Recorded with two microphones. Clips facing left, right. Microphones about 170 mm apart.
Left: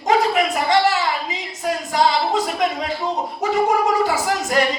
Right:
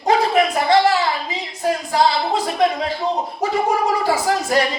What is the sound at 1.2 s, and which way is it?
A woman's voice, 35° right (ahead or behind).